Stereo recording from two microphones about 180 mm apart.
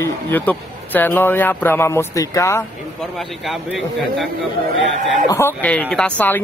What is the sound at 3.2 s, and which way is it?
A man's voice, centre (ahead or behind).